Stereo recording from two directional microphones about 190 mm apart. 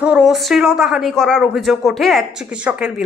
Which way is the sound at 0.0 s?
5° right (ahead or behind).